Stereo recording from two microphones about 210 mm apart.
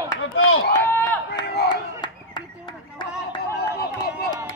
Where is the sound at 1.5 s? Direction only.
50° left (ahead or behind).